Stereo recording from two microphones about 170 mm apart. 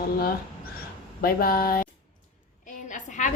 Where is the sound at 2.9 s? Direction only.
45° left (ahead or behind).